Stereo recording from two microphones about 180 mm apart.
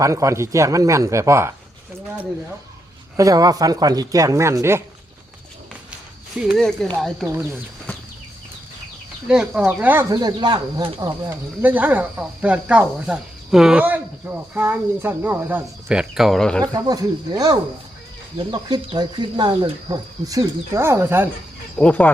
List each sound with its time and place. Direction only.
0.0 s speech: 15° right (ahead or behind)
3.2 s speech: 20° right (ahead or behind)
6.4 s speech: centre (ahead or behind)
7.3 s speech: 15° right (ahead or behind)
9.2 s speech: 5° right (ahead or behind); by 11.1 s 25° right (ahead or behind)
11.2 s speech: 10° right (ahead or behind); by 16.6 s 5° left (ahead or behind)
16.7 s speech: 20° right (ahead or behind)
21.8 s speech: 5° left (ahead or behind)